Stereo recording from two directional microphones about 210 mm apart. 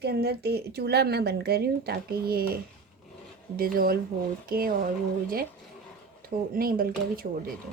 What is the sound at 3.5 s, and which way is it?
Speech, 45° right (ahead or behind).